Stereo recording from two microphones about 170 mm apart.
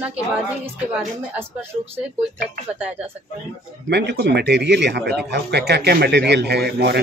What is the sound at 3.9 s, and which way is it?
A man's voice, 75° right (ahead or behind).